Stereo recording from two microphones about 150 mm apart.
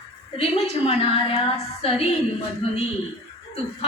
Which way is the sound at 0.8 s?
40° left (ahead or behind).